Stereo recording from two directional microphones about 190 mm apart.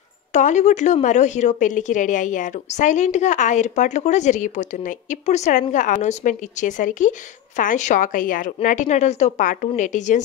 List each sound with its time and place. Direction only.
0.3 s a woman's voice: 40° left (ahead or behind)